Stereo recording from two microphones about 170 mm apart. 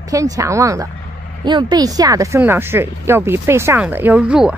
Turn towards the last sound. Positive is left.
turn(degrees=-5)  # may be behind; listen again after turning